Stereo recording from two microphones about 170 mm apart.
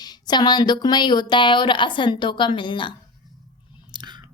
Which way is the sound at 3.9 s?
25° right (ahead or behind).